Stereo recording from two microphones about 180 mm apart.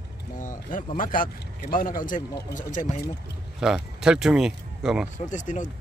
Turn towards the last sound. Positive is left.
turn(degrees=45)  # may be behind; listen again after turning